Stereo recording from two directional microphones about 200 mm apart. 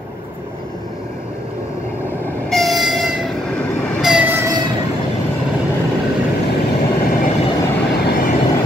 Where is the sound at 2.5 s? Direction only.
Centre (ahead or behind).